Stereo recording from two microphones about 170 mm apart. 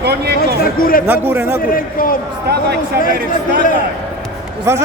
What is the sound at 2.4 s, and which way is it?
Speech, 70° right (ahead or behind).